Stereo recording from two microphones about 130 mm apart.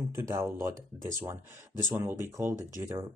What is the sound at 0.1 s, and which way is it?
Speech, 20° right (ahead or behind).